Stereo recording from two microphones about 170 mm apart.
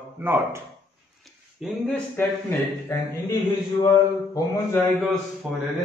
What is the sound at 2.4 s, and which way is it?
Speech, 15° left (ahead or behind).